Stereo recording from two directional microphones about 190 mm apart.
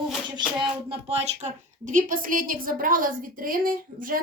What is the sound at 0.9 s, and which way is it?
A woman's voice, 35° right (ahead or behind).